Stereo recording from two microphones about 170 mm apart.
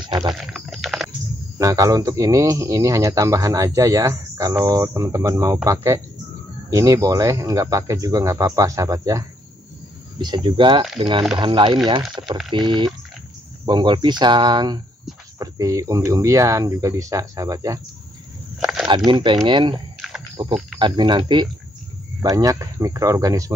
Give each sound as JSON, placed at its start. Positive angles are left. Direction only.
{"t": 0.0, "sound": "speech", "side_deg": -25}
{"t": 0.3, "sound": "a sound", "side_deg": 0}
{"t": 1.6, "sound": "speech", "side_deg": -20}
{"t": 19.0, "sound": "speech", "side_deg": -30}